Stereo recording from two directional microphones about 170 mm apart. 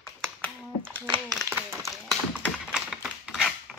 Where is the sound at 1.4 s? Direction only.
15° right (ahead or behind).